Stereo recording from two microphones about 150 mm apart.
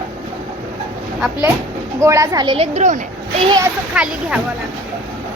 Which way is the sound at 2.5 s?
45° right (ahead or behind).